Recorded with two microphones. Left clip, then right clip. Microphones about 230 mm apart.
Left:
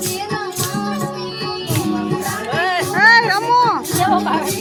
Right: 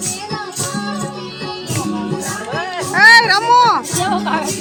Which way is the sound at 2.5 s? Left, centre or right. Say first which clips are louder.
Left 6 dB; left.